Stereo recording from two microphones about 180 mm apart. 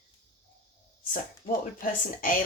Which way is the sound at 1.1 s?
50° left (ahead or behind).